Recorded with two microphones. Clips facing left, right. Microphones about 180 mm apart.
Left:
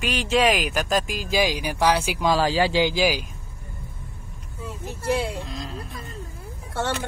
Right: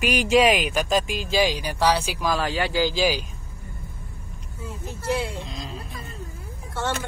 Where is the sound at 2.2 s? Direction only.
30° left (ahead or behind).